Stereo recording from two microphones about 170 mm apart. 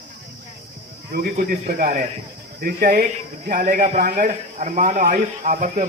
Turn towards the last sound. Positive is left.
turn(degrees=-50)  # may be behind; listen again after turning